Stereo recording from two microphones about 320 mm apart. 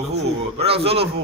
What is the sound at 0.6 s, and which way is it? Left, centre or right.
Speech, centre.